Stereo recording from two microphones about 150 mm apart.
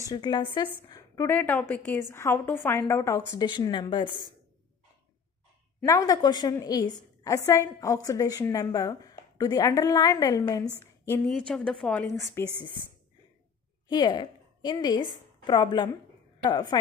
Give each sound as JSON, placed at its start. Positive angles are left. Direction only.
{"t": 0.0, "sound": "a woman's voice", "side_deg": 25}
{"t": 3.3, "sound": "speech", "side_deg": 30}
{"t": 5.9, "sound": "a woman's voice", "side_deg": 25}
{"t": 11.2, "sound": "a woman's voice", "side_deg": 5}
{"t": 13.8, "sound": "a woman's voice", "side_deg": 30}